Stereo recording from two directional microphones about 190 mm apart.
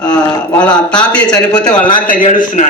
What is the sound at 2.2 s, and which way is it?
Speech, 40° left (ahead or behind).